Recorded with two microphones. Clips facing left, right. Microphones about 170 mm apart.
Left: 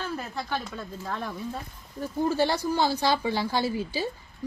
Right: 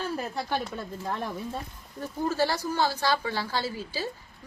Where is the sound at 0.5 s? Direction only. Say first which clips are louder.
Right 1 dB; 25° right (ahead or behind).